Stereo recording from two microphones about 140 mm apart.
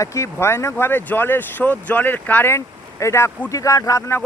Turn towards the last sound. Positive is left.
turn(degrees=20)  # may be behind; listen again after turning